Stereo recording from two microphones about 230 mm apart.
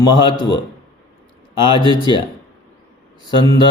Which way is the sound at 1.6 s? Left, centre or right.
Left.